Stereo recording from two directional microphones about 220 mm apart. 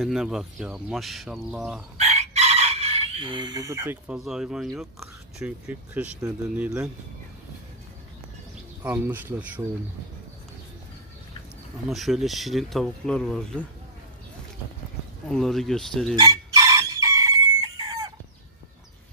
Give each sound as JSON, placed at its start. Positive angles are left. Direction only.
{"t": 0.0, "sound": "speech", "side_deg": 0}
{"t": 2.0, "sound": "speech", "side_deg": -30}
{"t": 8.8, "sound": "speech", "side_deg": -10}
{"t": 11.9, "sound": "speech", "side_deg": 0}
{"t": 15.2, "sound": "speech", "side_deg": 0}
{"t": 16.2, "sound": "chicken", "side_deg": -15}